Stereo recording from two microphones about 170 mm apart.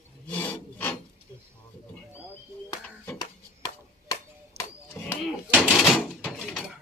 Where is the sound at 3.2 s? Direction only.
20° left (ahead or behind).